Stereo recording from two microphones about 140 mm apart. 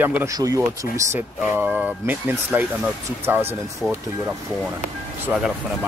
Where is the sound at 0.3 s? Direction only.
25° right (ahead or behind).